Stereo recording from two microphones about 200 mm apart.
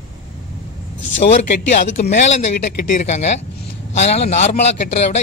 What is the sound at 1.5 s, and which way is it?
Speech, 35° left (ahead or behind).